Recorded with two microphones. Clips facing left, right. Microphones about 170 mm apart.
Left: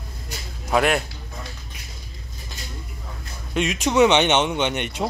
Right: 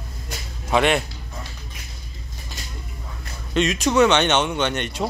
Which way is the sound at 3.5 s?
10° left (ahead or behind).